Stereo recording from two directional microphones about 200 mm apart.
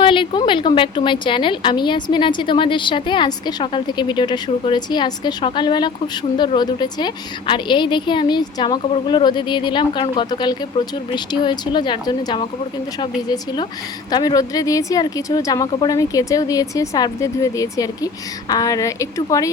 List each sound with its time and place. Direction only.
0.0 s a woman's voice: 25° left (ahead or behind)